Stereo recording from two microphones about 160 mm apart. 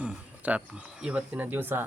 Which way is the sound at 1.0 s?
10° right (ahead or behind).